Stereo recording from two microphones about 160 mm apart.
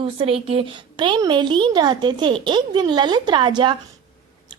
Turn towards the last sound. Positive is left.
turn(degrees=-30)  # may be behind; listen again after turning